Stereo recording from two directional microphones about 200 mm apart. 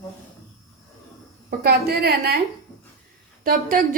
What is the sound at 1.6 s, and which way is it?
Speech, 50° right (ahead or behind).